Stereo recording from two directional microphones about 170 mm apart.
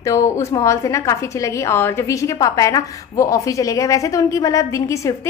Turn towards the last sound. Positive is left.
turn(degrees=20)  # may be behind; listen again after turning